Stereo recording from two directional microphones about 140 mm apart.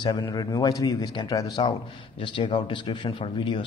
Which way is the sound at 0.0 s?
25° left (ahead or behind).